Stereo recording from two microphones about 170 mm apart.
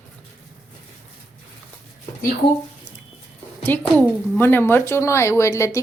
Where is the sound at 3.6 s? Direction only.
10° left (ahead or behind).